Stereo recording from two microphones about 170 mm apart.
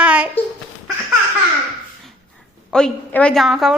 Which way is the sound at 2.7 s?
5° left (ahead or behind).